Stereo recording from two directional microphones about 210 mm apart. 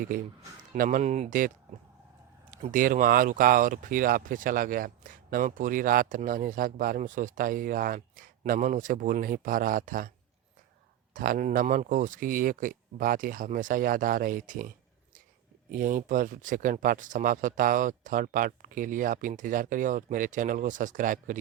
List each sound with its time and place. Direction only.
0.7 s speech: 40° right (ahead or behind)
11.1 s speech: 40° right (ahead or behind)
15.7 s speech: 40° right (ahead or behind)